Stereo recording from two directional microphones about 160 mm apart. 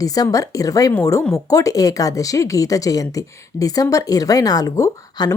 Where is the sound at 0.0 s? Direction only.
20° left (ahead or behind).